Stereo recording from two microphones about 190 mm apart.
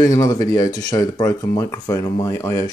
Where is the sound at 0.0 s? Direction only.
20° left (ahead or behind).